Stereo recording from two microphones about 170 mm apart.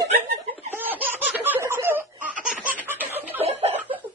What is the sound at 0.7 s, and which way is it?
Laughter, 10° right (ahead or behind).